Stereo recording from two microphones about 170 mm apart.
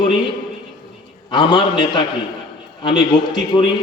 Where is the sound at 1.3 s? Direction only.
25° left (ahead or behind).